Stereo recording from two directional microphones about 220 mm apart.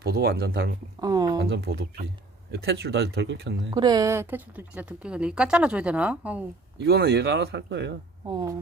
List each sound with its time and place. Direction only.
0.0 s speech: 45° right (ahead or behind)
1.0 s speech: 15° right (ahead or behind)
1.5 s speech: 45° right (ahead or behind)
3.8 s a woman's voice: 15° right (ahead or behind)
6.7 s speech: 50° right (ahead or behind)
8.3 s speech: 20° right (ahead or behind)